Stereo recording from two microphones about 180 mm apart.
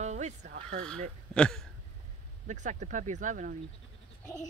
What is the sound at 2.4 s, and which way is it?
Speech, 40° right (ahead or behind).